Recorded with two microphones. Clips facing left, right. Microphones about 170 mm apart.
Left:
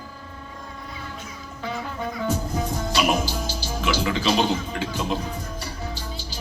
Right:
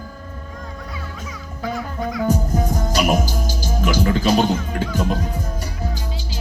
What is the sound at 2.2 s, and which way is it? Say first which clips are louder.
Music: right 6 dB; 40° right (ahead or behind).